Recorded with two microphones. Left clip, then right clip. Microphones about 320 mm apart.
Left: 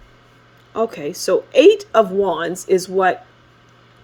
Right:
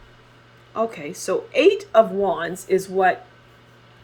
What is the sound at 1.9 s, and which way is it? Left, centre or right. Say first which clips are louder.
Speech: left 1 dB; left.